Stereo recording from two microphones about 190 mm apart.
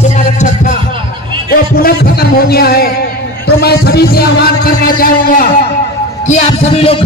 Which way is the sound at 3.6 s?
55° left (ahead or behind).